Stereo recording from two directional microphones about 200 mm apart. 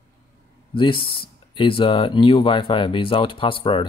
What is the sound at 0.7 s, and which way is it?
Speech, 25° left (ahead or behind).